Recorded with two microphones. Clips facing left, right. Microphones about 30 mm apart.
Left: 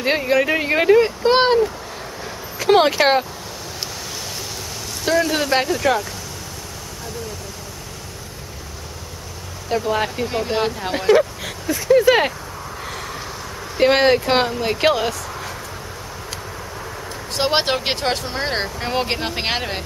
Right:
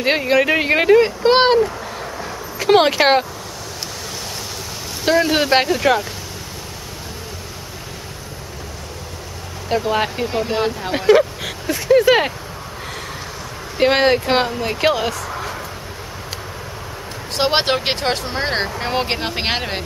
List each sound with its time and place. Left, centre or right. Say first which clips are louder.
0.0 s speech: right 2 dB; centre
2.2 s a sound: even; centre
5.0 s speech: right 3 dB; right
9.7 s speech: right 2 dB; centre
10.9 s speech: right 2 dB; centre
13.7 s speech: even; centre
17.4 s speech: right 2 dB; centre